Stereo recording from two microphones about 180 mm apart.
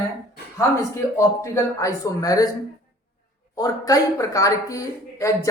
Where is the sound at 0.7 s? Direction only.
15° left (ahead or behind).